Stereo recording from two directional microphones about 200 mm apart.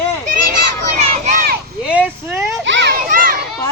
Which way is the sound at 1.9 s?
5° right (ahead or behind).